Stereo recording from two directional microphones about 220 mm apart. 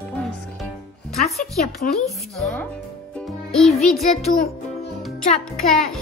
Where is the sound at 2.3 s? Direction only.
Centre (ahead or behind).